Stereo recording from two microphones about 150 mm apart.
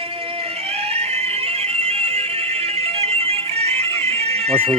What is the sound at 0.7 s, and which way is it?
Fire alarm, 40° right (ahead or behind).